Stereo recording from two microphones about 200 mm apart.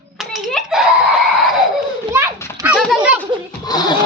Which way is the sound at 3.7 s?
20° left (ahead or behind).